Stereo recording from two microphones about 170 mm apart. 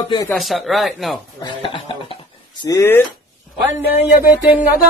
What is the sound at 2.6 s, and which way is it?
Speech, 15° left (ahead or behind).